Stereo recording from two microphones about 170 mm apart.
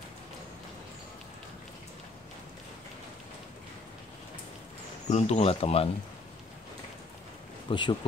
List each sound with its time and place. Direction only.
5.0 s speech: 40° left (ahead or behind)
7.7 s speech: 30° left (ahead or behind)